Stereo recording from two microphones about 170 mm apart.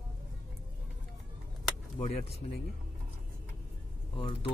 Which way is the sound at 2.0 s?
50° left (ahead or behind).